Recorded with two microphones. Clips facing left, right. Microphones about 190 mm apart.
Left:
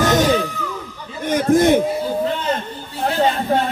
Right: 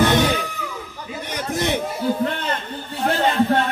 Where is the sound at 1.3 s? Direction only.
50° left (ahead or behind).